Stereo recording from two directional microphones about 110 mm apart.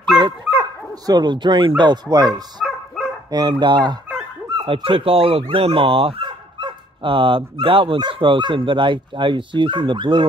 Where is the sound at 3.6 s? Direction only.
45° right (ahead or behind).